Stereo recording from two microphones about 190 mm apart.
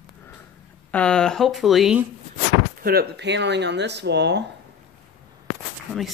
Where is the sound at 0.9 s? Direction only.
5° left (ahead or behind).